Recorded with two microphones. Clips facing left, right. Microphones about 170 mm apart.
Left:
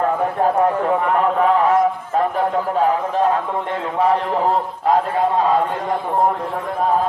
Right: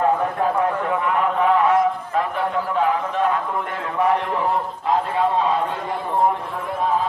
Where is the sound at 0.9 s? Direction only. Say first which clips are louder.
Left 4 dB; 40° left (ahead or behind).